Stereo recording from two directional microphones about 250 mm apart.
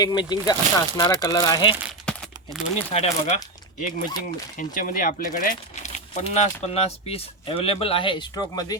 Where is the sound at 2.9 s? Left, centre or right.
Left.